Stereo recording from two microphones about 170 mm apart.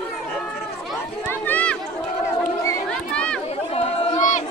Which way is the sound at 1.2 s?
10° left (ahead or behind).